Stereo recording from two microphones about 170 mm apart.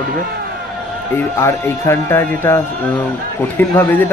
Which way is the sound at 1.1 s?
15° left (ahead or behind).